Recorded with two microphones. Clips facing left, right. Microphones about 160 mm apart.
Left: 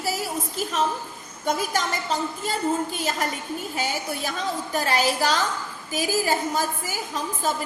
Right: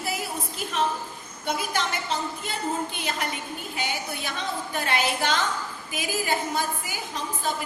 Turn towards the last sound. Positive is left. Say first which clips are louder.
# left 3 dB
turn(degrees=40)  # may be behind; listen again after turning